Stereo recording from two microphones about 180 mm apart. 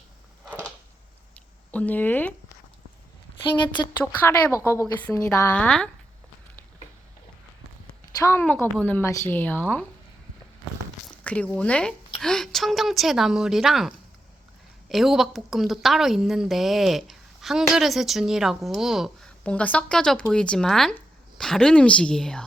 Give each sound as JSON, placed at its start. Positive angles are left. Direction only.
{"t": 1.3, "sound": "a sound", "side_deg": 5}
{"t": 3.4, "sound": "a woman's voice", "side_deg": 25}
{"t": 4.0, "sound": "a woman's voice", "side_deg": 10}
{"t": 8.2, "sound": "a woman's voice", "side_deg": 15}
{"t": 11.0, "sound": "a woman's voice", "side_deg": 5}